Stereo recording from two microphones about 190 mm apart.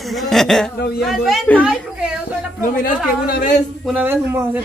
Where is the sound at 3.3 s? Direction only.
45° left (ahead or behind).